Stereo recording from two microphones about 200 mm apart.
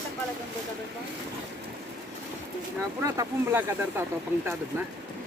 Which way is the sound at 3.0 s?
15° right (ahead or behind).